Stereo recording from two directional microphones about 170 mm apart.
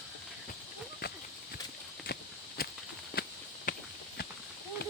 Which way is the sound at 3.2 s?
60° left (ahead or behind).